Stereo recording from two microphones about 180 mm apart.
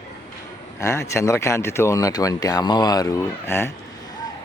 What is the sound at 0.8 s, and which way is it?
Speech, 15° left (ahead or behind).